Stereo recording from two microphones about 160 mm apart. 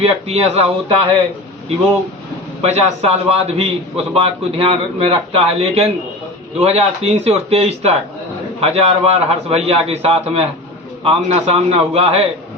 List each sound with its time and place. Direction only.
0.3 s a man's voice: 40° right (ahead or behind)
2.6 s a man's voice: 40° right (ahead or behind)